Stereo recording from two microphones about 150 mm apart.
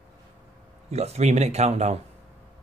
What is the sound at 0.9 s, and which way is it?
Speech, 45° right (ahead or behind).